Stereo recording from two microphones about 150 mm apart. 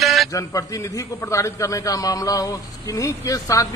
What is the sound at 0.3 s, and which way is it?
A man's voice, 20° left (ahead or behind).